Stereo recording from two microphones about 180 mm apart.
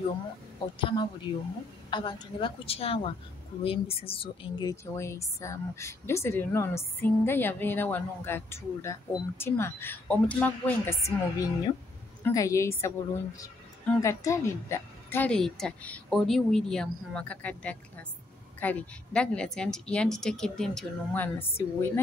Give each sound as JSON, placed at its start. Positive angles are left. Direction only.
{"t": 0.6, "sound": "a woman's voice", "side_deg": 25}